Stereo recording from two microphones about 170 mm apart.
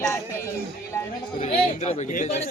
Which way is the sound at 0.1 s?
15° left (ahead or behind).